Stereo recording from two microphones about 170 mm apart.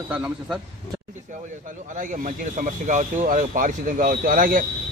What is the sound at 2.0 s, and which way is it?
Speech, 50° right (ahead or behind).